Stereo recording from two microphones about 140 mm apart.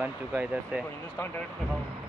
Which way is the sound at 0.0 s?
15° right (ahead or behind).